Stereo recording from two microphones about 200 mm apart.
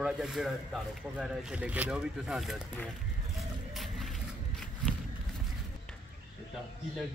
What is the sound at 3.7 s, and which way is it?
Music, centre (ahead or behind).